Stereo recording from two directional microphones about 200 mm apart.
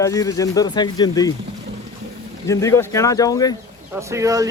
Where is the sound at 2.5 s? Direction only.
15° left (ahead or behind).